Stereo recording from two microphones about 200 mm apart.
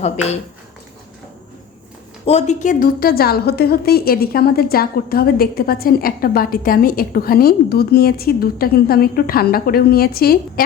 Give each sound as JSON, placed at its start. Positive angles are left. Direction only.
{"t": 0.0, "sound": "speech", "side_deg": 35}
{"t": 2.2, "sound": "a woman's voice", "side_deg": 35}